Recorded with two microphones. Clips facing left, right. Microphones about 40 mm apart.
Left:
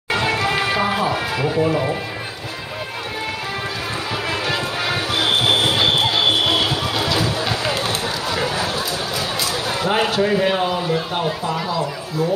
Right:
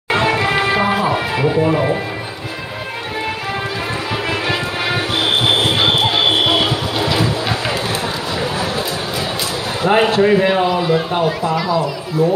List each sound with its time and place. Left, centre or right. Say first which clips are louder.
0.1 s music: right 4 dB; right
4.3 s music: right 2 dB; centre
9.8 s speech: right 6 dB; right
10.6 s speech: right 5 dB; right